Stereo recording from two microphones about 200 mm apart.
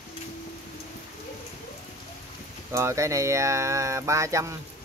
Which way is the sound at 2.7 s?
15° right (ahead or behind).